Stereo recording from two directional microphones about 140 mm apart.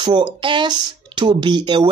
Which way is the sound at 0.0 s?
35° right (ahead or behind).